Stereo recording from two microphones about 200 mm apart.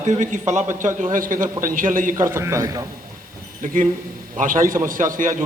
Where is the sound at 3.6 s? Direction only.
40° right (ahead or behind).